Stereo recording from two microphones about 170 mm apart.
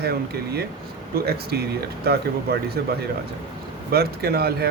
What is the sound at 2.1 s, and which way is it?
Speech, 65° right (ahead or behind).